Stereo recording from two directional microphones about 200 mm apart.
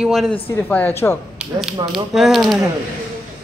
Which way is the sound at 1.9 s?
Centre (ahead or behind).